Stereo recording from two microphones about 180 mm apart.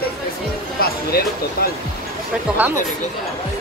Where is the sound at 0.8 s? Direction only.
55° left (ahead or behind).